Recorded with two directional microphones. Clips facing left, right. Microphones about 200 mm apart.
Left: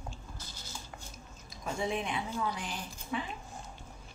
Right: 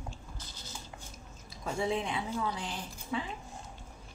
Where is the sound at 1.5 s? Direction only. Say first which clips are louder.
Right 2 dB; 30° right (ahead or behind).